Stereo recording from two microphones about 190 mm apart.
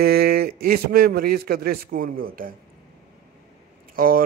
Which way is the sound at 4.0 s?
50° right (ahead or behind).